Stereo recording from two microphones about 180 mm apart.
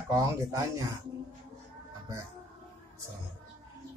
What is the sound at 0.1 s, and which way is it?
Speech, 20° right (ahead or behind).